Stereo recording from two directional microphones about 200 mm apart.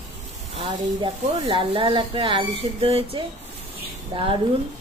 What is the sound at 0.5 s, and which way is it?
Speech, 25° right (ahead or behind).